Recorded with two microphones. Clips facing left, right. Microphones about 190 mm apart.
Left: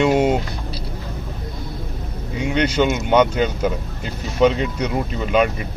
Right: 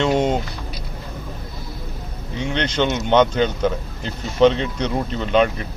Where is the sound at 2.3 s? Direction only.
10° left (ahead or behind).